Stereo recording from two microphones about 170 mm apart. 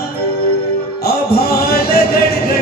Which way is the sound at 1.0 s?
65° left (ahead or behind).